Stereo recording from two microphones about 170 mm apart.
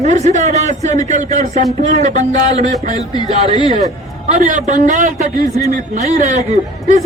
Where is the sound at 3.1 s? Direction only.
25° left (ahead or behind).